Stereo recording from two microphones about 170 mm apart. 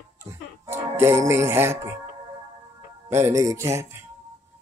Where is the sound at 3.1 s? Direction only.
15° right (ahead or behind).